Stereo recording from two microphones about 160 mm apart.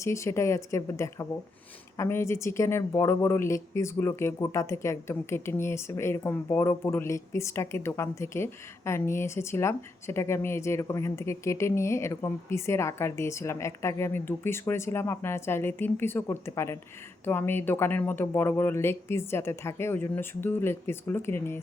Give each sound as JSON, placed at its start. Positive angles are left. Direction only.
{"t": 0.0, "sound": "speech", "side_deg": 20}